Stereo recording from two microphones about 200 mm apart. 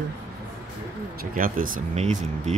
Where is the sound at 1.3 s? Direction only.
45° right (ahead or behind).